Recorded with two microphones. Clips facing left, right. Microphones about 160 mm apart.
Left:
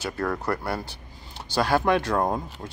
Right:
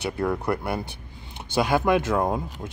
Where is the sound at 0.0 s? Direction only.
20° right (ahead or behind).